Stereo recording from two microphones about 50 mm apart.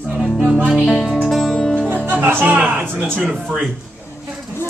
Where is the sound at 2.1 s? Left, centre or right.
Right.